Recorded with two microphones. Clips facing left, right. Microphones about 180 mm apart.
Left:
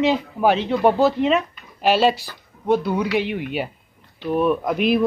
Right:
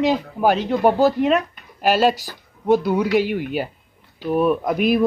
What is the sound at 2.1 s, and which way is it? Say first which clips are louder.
Speech: even; 40° right (ahead or behind).